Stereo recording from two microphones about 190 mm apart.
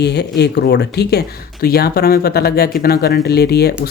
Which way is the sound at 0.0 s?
60° left (ahead or behind).